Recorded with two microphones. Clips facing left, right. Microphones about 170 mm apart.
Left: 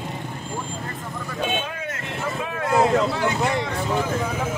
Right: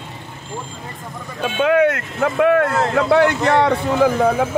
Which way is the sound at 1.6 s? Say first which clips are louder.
Right 16 dB; 75° right (ahead or behind).